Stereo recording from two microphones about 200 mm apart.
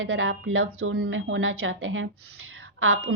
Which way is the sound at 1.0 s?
80° right.